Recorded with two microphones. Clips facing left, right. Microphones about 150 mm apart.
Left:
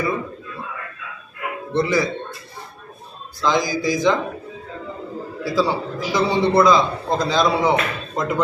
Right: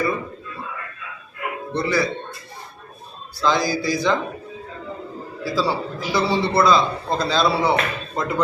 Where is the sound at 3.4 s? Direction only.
20° left (ahead or behind).